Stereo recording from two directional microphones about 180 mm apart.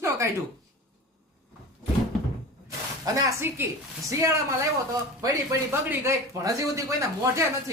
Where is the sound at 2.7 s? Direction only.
20° right (ahead or behind).